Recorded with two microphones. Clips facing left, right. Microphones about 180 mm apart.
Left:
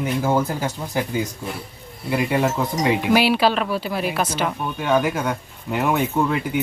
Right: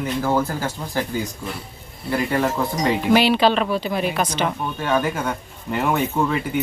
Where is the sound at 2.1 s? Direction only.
10° left (ahead or behind).